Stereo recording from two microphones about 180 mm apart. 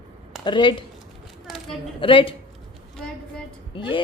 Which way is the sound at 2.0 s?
30° left (ahead or behind).